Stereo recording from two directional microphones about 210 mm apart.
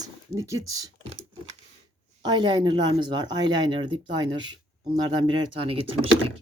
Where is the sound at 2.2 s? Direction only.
20° right (ahead or behind).